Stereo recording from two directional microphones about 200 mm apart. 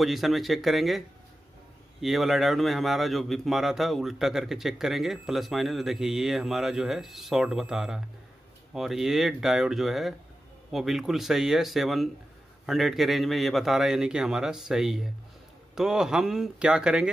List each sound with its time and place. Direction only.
0.0 s speech: centre (ahead or behind)